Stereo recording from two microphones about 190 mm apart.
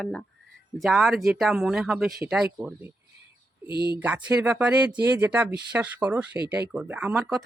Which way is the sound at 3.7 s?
55° right (ahead or behind).